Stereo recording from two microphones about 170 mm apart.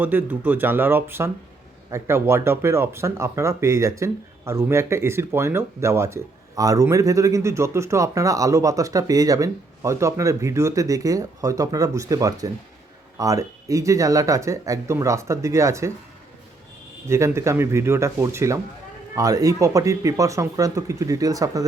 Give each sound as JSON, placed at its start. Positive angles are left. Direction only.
{"t": 0.0, "sound": "speech", "side_deg": -10}
{"t": 17.1, "sound": "speech", "side_deg": -15}